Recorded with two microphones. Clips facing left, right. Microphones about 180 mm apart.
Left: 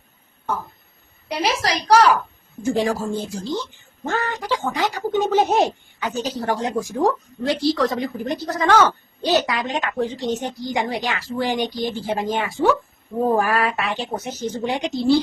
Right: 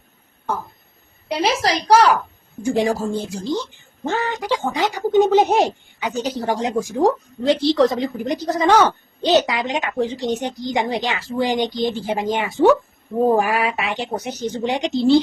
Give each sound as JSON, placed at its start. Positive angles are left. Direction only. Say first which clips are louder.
{"t": 1.3, "sound": "a woman's voice", "louder": "right 3 dB", "side_deg": -25}